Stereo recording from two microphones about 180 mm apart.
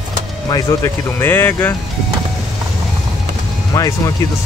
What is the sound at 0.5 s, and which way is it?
Speech, 20° left (ahead or behind).